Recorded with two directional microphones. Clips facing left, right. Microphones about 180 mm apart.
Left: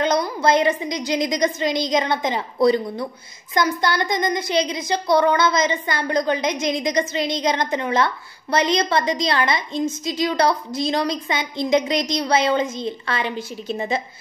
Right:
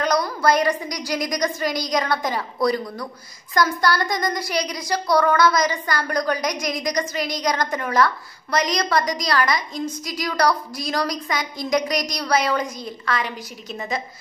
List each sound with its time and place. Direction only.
0.0 s a woman's voice: 25° left (ahead or behind)